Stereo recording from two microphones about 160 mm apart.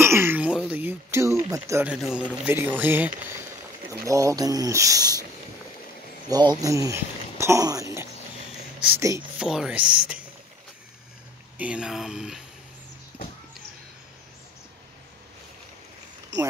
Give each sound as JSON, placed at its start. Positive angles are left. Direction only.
{"t": 0.0, "sound": "throat clearing", "side_deg": -15}
{"t": 0.7, "sound": "a sound", "side_deg": -10}
{"t": 1.9, "sound": "speech", "side_deg": -5}
{"t": 6.2, "sound": "speech", "side_deg": -25}
{"t": 9.4, "sound": "speech", "side_deg": -5}
{"t": 11.5, "sound": "speech", "side_deg": -10}